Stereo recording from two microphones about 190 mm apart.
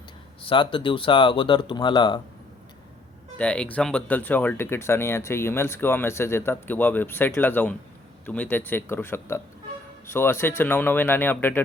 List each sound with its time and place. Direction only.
0.4 s speech: 25° left (ahead or behind)
3.3 s speech: 5° left (ahead or behind)